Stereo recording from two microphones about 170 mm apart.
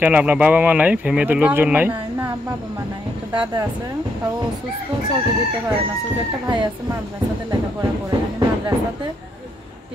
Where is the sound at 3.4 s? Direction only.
25° right (ahead or behind).